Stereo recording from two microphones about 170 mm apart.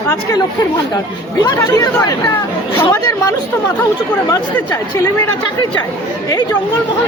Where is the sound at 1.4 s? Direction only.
20° left (ahead or behind).